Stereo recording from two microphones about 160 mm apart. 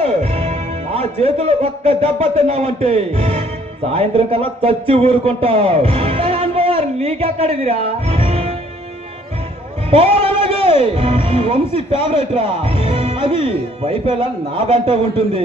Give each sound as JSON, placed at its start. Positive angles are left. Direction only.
{"t": 0.0, "sound": "speech", "side_deg": -40}
{"t": 9.8, "sound": "a man's voice", "side_deg": -35}